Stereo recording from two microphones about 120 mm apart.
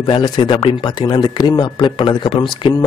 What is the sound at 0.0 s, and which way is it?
Speech, 45° left (ahead or behind).